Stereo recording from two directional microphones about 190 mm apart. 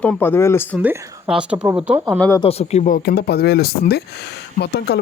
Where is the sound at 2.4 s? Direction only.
30° left (ahead or behind).